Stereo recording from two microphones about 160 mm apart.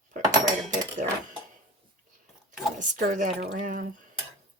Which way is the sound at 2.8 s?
50° right (ahead or behind).